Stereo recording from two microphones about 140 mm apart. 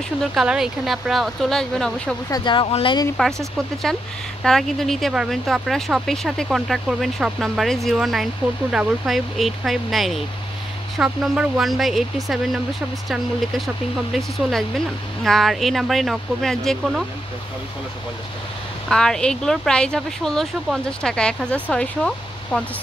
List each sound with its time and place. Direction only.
0.2 s speech: centre (ahead or behind)
2.2 s speech: 30° left (ahead or behind)
3.9 s speech: 5° left (ahead or behind)
15.2 s speech: centre (ahead or behind)
18.9 s speech: 5° left (ahead or behind)